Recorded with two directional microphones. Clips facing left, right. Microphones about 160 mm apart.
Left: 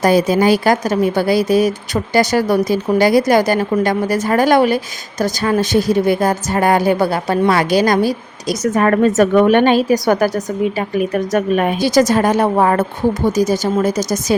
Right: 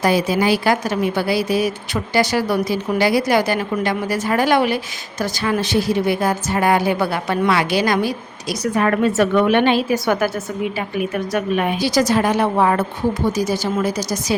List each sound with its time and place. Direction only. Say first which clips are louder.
0.0 s a woman's voice: left 4 dB; 45° left (ahead or behind)